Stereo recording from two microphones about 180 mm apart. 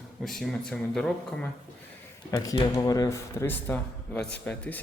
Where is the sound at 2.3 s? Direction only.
20° left (ahead or behind).